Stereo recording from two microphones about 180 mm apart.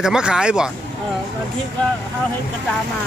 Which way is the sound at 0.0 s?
5° right (ahead or behind).